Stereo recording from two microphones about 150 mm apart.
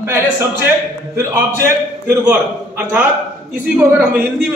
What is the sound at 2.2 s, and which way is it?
Speech, 10° right (ahead or behind).